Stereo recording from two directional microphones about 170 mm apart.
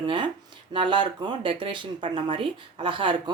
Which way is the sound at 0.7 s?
30° right (ahead or behind).